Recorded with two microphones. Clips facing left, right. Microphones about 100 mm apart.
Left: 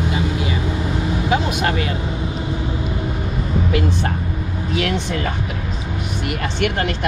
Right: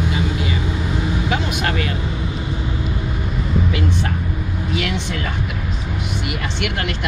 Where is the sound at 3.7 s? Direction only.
50° left (ahead or behind).